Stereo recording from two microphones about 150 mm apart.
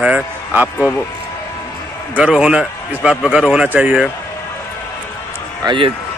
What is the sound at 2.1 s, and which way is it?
Speech, 5° right (ahead or behind).